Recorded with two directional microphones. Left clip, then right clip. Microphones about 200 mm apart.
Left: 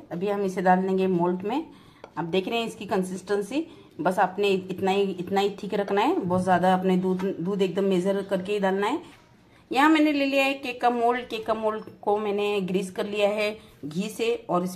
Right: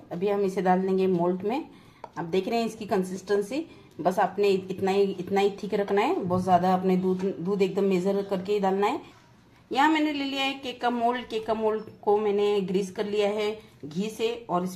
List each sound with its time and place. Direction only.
0.1 s a woman's voice: 5° left (ahead or behind); by 14.7 s 20° left (ahead or behind)